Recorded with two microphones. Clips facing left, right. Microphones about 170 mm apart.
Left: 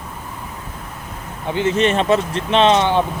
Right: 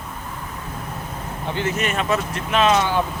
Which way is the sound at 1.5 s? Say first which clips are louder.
Left 6 dB; 15° left (ahead or behind).